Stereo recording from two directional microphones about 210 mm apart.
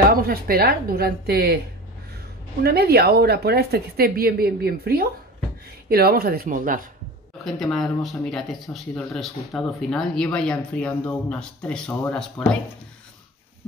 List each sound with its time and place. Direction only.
0.1 s speech: 45° right (ahead or behind)
2.6 s speech: 50° right (ahead or behind)
7.4 s speech: centre (ahead or behind)